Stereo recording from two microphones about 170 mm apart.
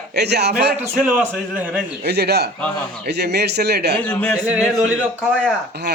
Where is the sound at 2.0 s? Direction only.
75° right (ahead or behind).